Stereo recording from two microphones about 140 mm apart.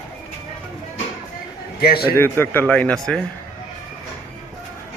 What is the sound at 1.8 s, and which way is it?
Speech, 90° left.